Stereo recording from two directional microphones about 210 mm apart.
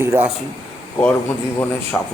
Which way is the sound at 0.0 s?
10° right (ahead or behind).